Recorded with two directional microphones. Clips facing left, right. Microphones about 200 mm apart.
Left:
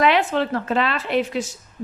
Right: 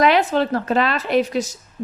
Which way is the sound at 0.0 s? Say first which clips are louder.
Right 2 dB; 40° right (ahead or behind).